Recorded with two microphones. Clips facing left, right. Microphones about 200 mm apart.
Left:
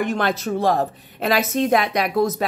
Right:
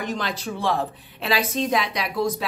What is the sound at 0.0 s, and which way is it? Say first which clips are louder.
A woman's voice: left 6 dB; 55° left (ahead or behind).